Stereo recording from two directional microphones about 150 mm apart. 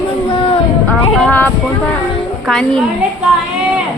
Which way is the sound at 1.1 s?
10° left (ahead or behind).